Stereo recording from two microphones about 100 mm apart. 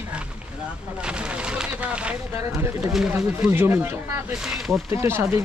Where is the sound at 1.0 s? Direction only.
10° right (ahead or behind).